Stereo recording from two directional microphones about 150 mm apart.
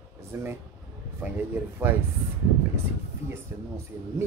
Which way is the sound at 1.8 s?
15° right (ahead or behind).